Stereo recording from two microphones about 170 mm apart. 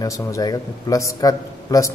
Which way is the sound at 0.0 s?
20° left (ahead or behind).